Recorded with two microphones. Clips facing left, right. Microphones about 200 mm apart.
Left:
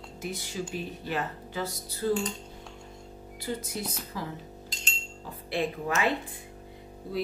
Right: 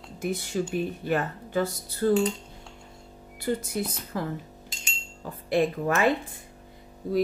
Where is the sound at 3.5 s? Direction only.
55° right (ahead or behind).